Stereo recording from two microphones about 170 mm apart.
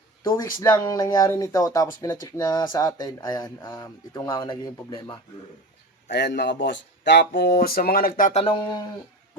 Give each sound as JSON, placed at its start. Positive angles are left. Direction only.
{"t": 0.6, "sound": "speech", "side_deg": 20}
{"t": 6.1, "sound": "speech", "side_deg": 90}
{"t": 8.3, "sound": "speech", "side_deg": 35}